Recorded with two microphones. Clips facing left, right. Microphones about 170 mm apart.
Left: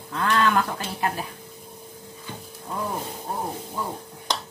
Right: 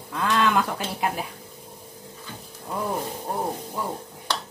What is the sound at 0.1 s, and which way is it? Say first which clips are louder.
A woman's voice: even; 10° right (ahead or behind).